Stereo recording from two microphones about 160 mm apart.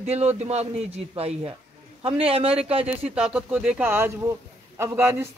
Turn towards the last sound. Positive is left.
turn(degrees=-15)  # may be behind; listen again after turning